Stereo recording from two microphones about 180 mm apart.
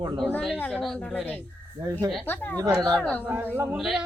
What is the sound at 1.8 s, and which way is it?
Speech, 20° right (ahead or behind).